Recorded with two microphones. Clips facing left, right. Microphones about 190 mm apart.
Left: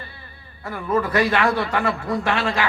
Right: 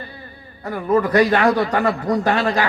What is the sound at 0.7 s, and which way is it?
Speech, 40° right (ahead or behind).